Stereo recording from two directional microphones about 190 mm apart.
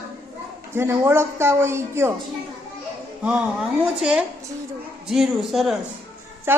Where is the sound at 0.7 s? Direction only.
15° right (ahead or behind).